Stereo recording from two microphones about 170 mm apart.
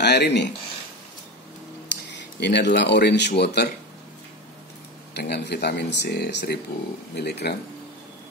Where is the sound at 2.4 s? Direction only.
90° left.